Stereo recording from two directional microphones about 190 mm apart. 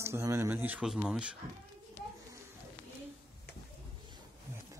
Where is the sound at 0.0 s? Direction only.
15° right (ahead or behind).